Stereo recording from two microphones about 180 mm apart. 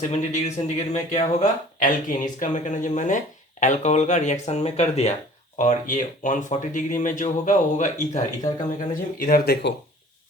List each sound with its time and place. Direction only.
0.1 s speech: 40° left (ahead or behind)
8.9 s speech: 50° left (ahead or behind)